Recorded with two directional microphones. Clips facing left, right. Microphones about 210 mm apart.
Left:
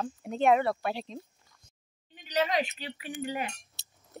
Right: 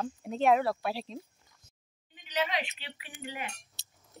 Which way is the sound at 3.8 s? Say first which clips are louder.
Even; 60° left (ahead or behind).